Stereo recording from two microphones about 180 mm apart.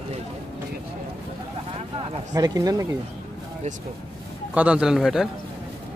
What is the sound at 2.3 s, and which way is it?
Speech, 20° right (ahead or behind).